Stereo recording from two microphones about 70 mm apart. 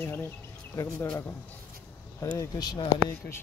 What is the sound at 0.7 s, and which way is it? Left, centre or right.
Speech, left.